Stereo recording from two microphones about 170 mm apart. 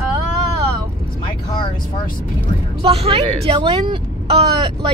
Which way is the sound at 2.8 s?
35° right (ahead or behind).